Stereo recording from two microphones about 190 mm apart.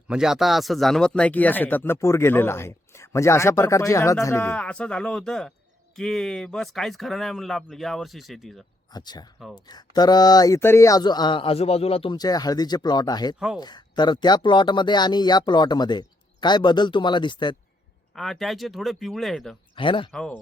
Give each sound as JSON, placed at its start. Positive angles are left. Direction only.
{"t": 0.1, "sound": "speech", "side_deg": -5}
{"t": 8.9, "sound": "speech", "side_deg": 20}
{"t": 18.1, "sound": "speech", "side_deg": 0}
{"t": 19.7, "sound": "speech", "side_deg": 25}
{"t": 20.1, "sound": "speech", "side_deg": 5}